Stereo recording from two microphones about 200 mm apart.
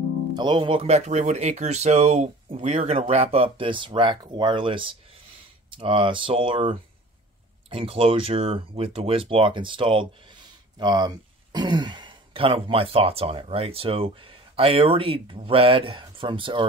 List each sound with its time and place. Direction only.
0.4 s speech: 25° right (ahead or behind)